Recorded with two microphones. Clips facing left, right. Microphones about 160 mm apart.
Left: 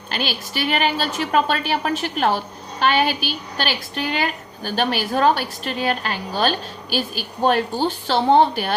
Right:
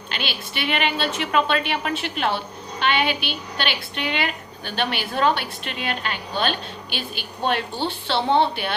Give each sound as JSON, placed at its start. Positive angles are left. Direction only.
{"t": 0.1, "sound": "a woman's voice", "side_deg": 40}